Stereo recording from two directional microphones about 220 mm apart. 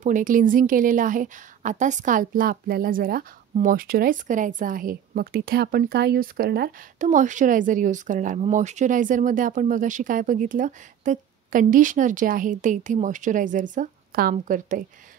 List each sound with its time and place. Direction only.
0.0 s a woman's voice: 35° right (ahead or behind)